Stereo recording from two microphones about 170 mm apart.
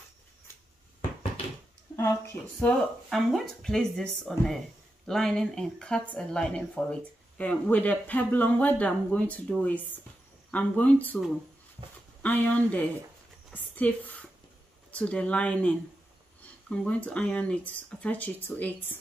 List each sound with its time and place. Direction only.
2.0 s speech: 15° left (ahead or behind)
2.8 s speech: centre (ahead or behind)